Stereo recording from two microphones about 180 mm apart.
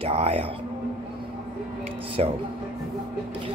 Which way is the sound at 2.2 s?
35° right (ahead or behind).